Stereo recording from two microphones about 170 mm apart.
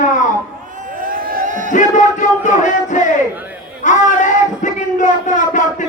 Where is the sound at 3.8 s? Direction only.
45° left (ahead or behind).